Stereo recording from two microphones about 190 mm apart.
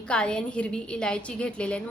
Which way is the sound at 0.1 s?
5° left (ahead or behind).